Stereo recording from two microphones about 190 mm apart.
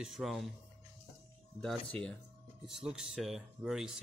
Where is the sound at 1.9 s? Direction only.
5° left (ahead or behind).